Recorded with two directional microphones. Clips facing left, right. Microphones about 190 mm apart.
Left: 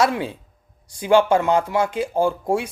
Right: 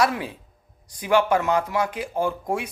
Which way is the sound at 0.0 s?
25° left (ahead or behind).